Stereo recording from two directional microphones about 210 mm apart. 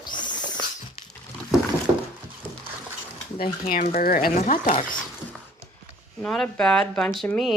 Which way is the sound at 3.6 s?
35° left (ahead or behind).